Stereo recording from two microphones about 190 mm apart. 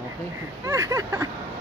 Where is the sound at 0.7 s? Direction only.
15° right (ahead or behind).